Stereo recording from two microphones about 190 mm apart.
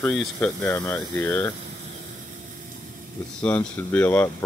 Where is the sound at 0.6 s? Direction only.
15° left (ahead or behind).